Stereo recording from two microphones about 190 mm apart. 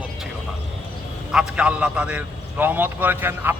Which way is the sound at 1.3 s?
5° right (ahead or behind).